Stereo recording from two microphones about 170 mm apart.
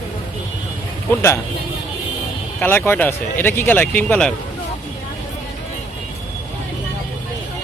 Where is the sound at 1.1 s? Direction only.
15° left (ahead or behind).